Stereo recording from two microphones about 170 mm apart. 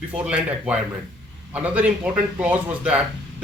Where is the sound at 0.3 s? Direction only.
10° right (ahead or behind).